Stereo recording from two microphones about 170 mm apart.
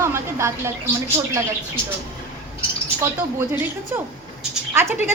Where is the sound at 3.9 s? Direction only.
10° right (ahead or behind).